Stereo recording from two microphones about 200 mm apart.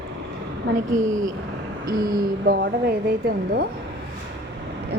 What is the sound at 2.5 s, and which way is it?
Speech, 50° right (ahead or behind).